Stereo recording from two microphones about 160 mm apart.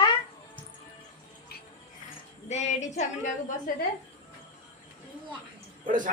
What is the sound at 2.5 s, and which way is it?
Speech, 45° left (ahead or behind).